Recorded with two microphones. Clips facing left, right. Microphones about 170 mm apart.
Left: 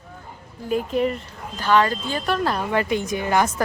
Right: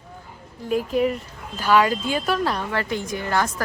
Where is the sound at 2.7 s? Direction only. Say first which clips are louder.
Left 4 dB; 20° left (ahead or behind).